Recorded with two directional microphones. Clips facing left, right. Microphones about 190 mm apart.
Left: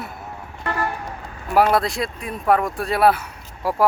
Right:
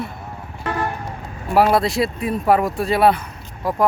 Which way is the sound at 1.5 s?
5° right (ahead or behind).